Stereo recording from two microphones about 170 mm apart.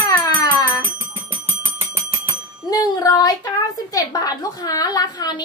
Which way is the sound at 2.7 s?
20° left (ahead or behind).